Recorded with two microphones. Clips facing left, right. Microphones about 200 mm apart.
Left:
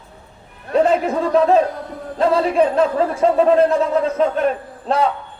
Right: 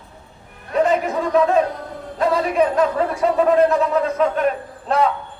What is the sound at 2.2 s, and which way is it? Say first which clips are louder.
A man's voice: left 2 dB; 30° left (ahead or behind).